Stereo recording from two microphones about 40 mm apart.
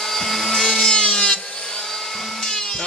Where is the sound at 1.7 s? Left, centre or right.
Centre.